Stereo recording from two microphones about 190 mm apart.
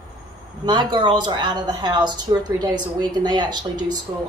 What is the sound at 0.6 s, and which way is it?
A woman's voice, 25° right (ahead or behind).